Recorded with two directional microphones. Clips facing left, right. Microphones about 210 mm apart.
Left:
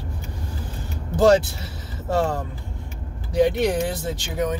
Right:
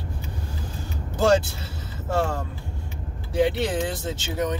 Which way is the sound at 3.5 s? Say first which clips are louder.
Left 4 dB; 15° left (ahead or behind).